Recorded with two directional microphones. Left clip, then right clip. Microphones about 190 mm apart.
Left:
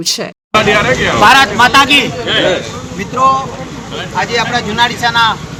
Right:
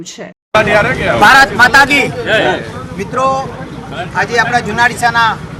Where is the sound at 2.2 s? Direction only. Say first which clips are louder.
Right 1 dB; 40° right (ahead or behind).